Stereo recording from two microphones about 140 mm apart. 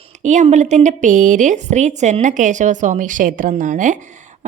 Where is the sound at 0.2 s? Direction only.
60° right (ahead or behind).